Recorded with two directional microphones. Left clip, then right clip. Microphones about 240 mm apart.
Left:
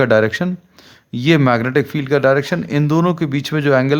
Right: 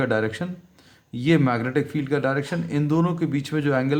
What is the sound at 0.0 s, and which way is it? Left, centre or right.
A man's voice, left.